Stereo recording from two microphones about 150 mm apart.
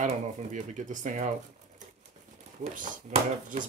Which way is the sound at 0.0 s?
55° right (ahead or behind).